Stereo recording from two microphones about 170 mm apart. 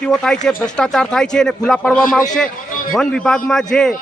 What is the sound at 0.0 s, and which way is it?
Speech, 5° left (ahead or behind).